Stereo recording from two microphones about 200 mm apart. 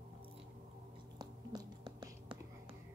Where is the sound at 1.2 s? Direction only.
20° right (ahead or behind).